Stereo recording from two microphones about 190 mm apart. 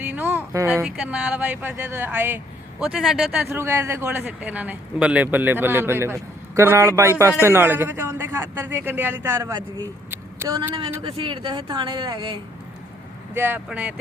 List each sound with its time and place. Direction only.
0.0 s speech: 10° right (ahead or behind)
10.1 s a sound: 15° right (ahead or behind)
11.0 s speech: 25° right (ahead or behind)
13.3 s speech: 10° right (ahead or behind)